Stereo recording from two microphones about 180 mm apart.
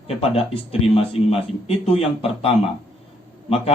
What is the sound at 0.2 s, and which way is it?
A man's voice, 35° left (ahead or behind).